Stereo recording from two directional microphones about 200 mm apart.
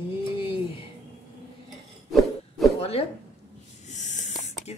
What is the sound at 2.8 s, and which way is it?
Speech, 30° left (ahead or behind).